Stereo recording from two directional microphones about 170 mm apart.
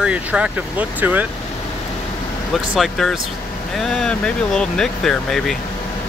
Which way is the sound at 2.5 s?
Centre (ahead or behind).